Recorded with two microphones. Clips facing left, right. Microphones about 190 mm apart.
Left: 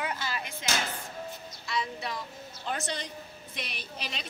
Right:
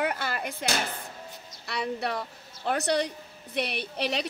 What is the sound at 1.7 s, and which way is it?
A woman's voice, 65° right (ahead or behind).